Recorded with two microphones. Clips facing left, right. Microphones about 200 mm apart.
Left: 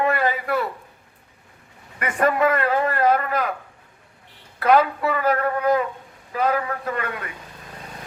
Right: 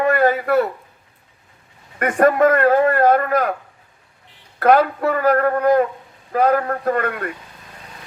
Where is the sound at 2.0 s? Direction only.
45° right (ahead or behind).